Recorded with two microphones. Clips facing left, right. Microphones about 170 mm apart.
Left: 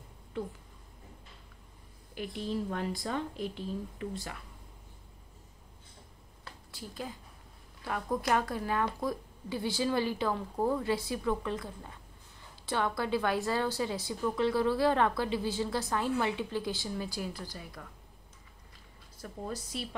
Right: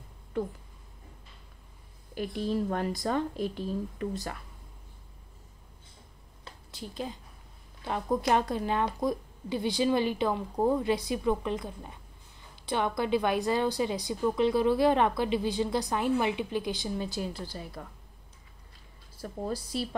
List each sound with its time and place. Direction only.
0.3 s speech: 45° right (ahead or behind)
2.1 s speech: 45° right (ahead or behind)
6.4 s a sound: 20° right (ahead or behind)
7.8 s a woman's voice: 25° right (ahead or behind)
19.2 s a woman's voice: 35° right (ahead or behind)